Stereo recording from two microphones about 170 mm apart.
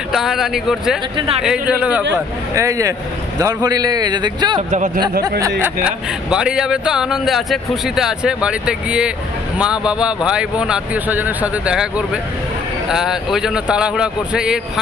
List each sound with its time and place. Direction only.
0.1 s a man's voice: centre (ahead or behind)
1.1 s speech: 30° right (ahead or behind)
1.4 s a man's voice: 5° right (ahead or behind); by 4.6 s 25° right (ahead or behind)
4.6 s speech: 45° right (ahead or behind)
5.6 s a man's voice: 10° right (ahead or behind)